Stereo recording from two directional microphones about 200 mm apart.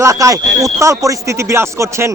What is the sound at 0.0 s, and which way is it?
Speech, 15° right (ahead or behind).